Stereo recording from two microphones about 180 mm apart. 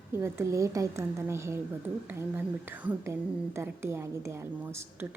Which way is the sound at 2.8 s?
15° right (ahead or behind).